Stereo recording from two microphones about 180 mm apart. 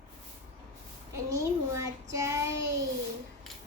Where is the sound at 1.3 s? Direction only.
15° right (ahead or behind).